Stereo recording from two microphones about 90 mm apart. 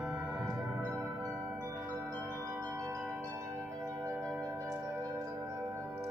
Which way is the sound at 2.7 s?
35° right (ahead or behind).